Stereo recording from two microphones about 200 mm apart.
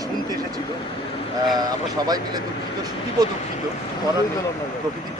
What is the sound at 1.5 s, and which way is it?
Speech, 20° right (ahead or behind).